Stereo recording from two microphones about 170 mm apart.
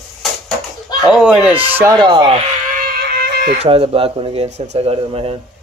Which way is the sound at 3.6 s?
35° right (ahead or behind).